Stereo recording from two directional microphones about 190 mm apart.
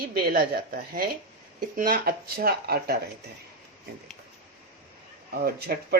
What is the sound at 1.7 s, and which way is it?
Speech, 50° right (ahead or behind).